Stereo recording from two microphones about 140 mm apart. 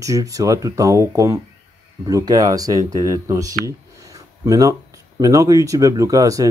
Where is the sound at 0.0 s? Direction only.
25° right (ahead or behind).